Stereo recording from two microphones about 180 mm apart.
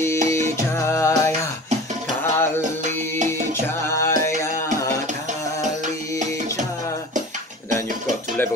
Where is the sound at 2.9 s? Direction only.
10° left (ahead or behind).